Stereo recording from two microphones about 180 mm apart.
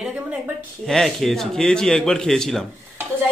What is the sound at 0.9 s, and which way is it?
A woman's voice, centre (ahead or behind).